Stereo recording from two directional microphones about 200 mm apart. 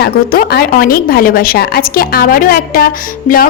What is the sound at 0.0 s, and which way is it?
Speech, 50° left (ahead or behind).